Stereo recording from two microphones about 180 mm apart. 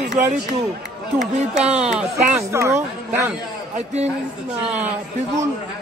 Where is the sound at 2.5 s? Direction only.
15° right (ahead or behind).